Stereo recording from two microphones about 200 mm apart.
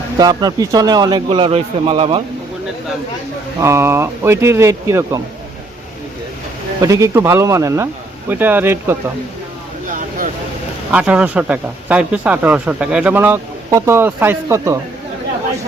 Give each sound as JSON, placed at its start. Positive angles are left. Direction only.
{"t": 0.2, "sound": "speech", "side_deg": -20}
{"t": 3.6, "sound": "speech", "side_deg": -15}
{"t": 6.8, "sound": "speech", "side_deg": -15}
{"t": 10.9, "sound": "speech", "side_deg": -5}